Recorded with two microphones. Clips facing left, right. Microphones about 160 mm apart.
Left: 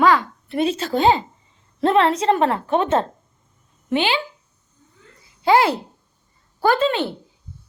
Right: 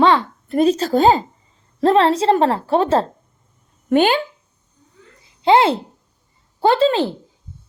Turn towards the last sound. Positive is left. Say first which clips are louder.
# right 4 dB
turn(degrees=-35)  # may be behind; listen again after turning